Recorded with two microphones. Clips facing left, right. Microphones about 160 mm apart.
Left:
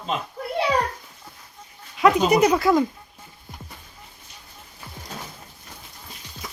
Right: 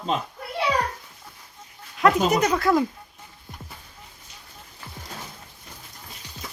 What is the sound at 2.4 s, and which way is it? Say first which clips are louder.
Speech: left 3 dB; 10° left (ahead or behind).